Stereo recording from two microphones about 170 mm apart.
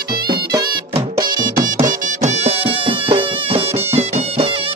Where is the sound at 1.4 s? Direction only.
50° right (ahead or behind).